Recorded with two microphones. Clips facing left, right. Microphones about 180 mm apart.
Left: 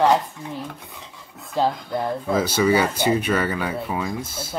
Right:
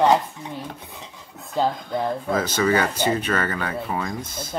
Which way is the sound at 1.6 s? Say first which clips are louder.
Left 1 dB; 5° left (ahead or behind).